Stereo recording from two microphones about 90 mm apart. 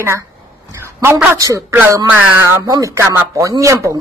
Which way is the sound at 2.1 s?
25° right (ahead or behind).